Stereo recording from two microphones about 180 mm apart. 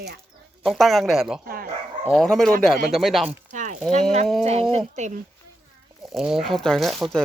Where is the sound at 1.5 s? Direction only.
55° right (ahead or behind).